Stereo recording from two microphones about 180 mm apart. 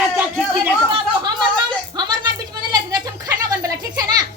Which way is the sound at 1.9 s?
25° right (ahead or behind).